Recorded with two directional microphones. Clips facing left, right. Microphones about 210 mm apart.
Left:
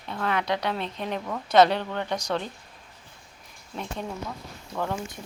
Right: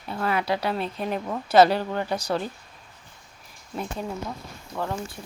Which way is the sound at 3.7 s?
5° right (ahead or behind).